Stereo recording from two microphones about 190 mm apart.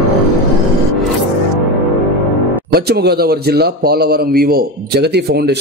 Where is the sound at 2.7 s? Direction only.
55° right (ahead or behind).